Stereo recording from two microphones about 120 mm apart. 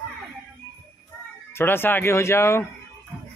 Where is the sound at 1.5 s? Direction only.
20° left (ahead or behind).